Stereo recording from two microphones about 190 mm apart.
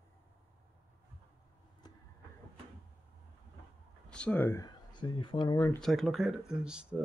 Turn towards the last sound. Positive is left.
turn(degrees=-5)  # may be behind; listen again after turning